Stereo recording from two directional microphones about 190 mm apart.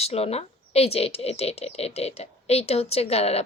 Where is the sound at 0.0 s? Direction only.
30° left (ahead or behind).